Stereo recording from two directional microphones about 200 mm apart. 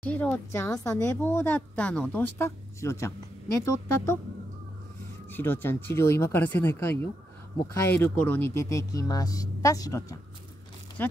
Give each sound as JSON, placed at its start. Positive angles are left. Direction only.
{"t": 0.0, "sound": "a woman's voice", "side_deg": 5}
{"t": 5.3, "sound": "a woman's voice", "side_deg": 10}